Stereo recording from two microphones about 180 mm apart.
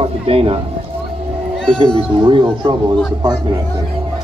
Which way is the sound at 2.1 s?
30° right (ahead or behind).